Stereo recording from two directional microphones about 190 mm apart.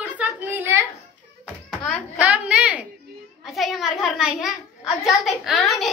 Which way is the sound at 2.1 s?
5° right (ahead or behind).